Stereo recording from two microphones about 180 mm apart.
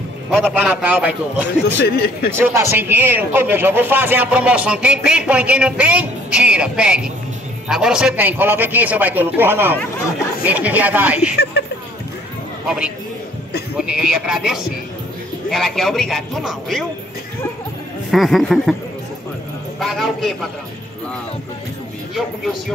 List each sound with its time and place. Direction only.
0.3 s speech: 5° right (ahead or behind)
1.8 s speech: 60° left (ahead or behind)
2.3 s speech: 15° right (ahead or behind)
11.6 s a sound: 65° left (ahead or behind)
13.7 s a man's voice: 5° right (ahead or behind)
18.1 s a man's voice: centre (ahead or behind)
19.8 s a man's voice: centre (ahead or behind)